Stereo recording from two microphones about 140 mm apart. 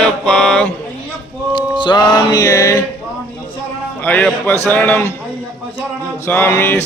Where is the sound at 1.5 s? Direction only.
30° left (ahead or behind).